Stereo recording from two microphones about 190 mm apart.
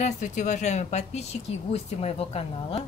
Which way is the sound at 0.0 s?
40° left (ahead or behind).